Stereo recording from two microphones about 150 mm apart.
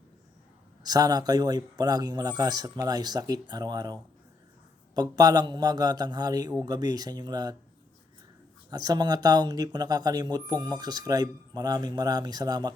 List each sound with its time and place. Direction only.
0.9 s speech: 25° right (ahead or behind)
4.9 s speech: 25° right (ahead or behind)
8.7 s speech: 25° right (ahead or behind)